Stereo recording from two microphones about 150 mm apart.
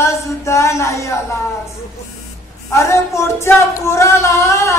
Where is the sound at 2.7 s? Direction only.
20° left (ahead or behind).